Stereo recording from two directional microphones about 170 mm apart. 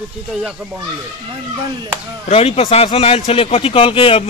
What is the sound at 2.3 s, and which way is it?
A man's voice, 35° left (ahead or behind).